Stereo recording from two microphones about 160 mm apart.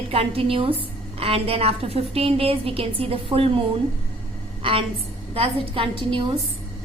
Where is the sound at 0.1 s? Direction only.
40° right (ahead or behind).